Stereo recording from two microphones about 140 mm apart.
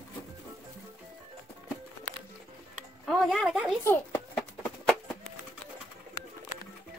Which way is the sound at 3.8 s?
15° left (ahead or behind).